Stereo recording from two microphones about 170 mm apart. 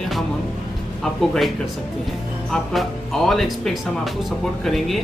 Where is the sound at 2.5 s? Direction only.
Centre (ahead or behind).